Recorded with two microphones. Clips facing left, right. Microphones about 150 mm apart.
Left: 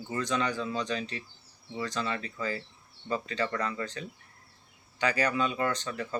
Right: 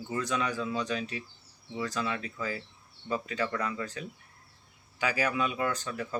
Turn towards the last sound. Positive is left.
turn(degrees=-5)  # may be behind; listen again after turning